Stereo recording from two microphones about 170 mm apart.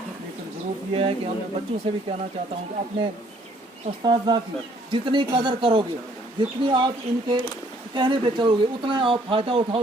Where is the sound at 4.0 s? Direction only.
25° right (ahead or behind).